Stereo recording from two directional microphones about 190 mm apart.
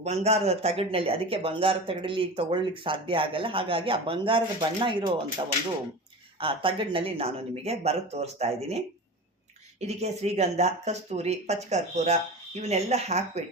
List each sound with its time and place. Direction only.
0.0 s speech: 35° right (ahead or behind)
6.4 s speech: 30° right (ahead or behind)
9.8 s speech: 35° right (ahead or behind)